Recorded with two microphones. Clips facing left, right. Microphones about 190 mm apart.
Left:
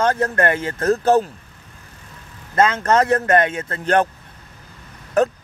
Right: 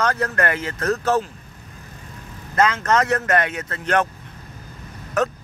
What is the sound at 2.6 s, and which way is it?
Speech, 30° left (ahead or behind).